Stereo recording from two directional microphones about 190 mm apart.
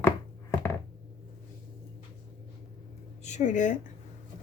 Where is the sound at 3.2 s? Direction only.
40° left (ahead or behind).